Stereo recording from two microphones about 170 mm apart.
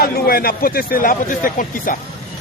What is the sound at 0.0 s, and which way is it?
Speech, 60° left (ahead or behind).